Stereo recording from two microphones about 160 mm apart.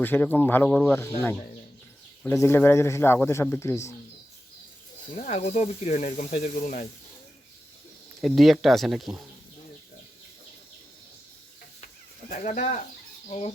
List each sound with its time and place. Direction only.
0.0 s speech: 10° left (ahead or behind)
2.2 s speech: 15° left (ahead or behind)
5.1 s speech: 45° left (ahead or behind)
8.2 s speech: centre (ahead or behind)
12.3 s speech: 50° left (ahead or behind)